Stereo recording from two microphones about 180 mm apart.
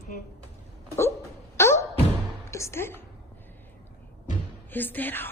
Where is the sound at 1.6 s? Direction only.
15° left (ahead or behind).